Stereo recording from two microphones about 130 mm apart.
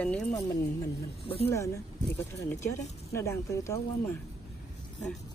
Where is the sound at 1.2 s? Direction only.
45° left (ahead or behind).